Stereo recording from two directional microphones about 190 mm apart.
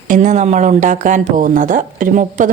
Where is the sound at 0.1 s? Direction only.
40° right (ahead or behind).